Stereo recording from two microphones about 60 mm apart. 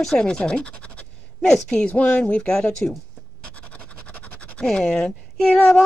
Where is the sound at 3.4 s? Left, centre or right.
Left.